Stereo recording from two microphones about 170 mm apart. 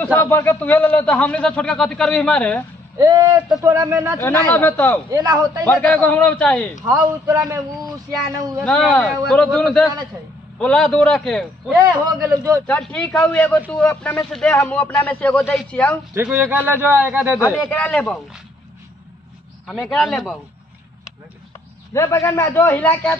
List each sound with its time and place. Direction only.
0.0 s a man's voice: 10° left (ahead or behind)
3.0 s speech: 20° right (ahead or behind)
4.2 s a man's voice: 15° left (ahead or behind)
5.1 s speech: 25° right (ahead or behind)
5.7 s a man's voice: 10° left (ahead or behind)
7.0 s speech: 20° right (ahead or behind)
8.6 s a man's voice: 5° left (ahead or behind)
12.0 s speech: 20° right (ahead or behind)
12.6 s a man's voice: 10° left (ahead or behind)
16.2 s a man's voice: 10° right (ahead or behind)
17.6 s a man's voice: 10° left (ahead or behind)
19.7 s a man's voice: centre (ahead or behind)
21.9 s a man's voice: 15° left (ahead or behind)